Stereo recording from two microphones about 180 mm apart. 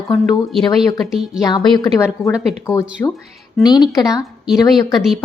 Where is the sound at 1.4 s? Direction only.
20° left (ahead or behind).